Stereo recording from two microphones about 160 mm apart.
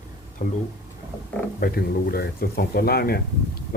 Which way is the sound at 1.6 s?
70° left (ahead or behind).